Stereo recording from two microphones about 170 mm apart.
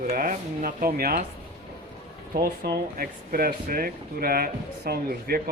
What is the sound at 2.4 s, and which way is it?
Speech, 60° right (ahead or behind).